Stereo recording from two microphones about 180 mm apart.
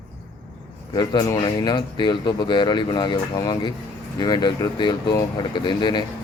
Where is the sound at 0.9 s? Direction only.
25° left (ahead or behind).